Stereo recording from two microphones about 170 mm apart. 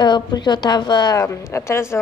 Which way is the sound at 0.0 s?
25° left (ahead or behind).